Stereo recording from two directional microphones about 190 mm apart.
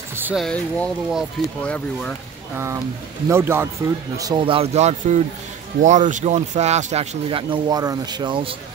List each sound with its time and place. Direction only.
0.1 s a sound: 10° right (ahead or behind)
0.5 s speech: 5° left (ahead or behind)
3.3 s speech: 15° right (ahead or behind)
4.2 s speech: 25° right (ahead or behind)